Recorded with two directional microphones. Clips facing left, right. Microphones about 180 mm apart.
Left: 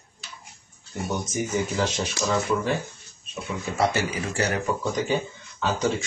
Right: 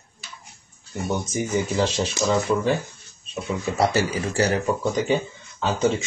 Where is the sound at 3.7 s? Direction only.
35° right (ahead or behind).